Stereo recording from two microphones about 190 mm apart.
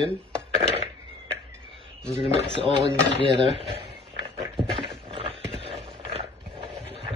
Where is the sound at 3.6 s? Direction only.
30° right (ahead or behind).